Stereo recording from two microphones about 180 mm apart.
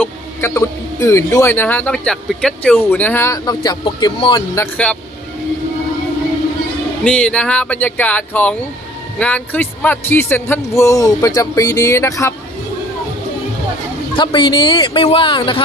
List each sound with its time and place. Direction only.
0.0 s speech: 15° left (ahead or behind)
4.4 s speech: 15° left (ahead or behind)
7.0 s speech: 5° left (ahead or behind)
14.2 s speech: 25° left (ahead or behind)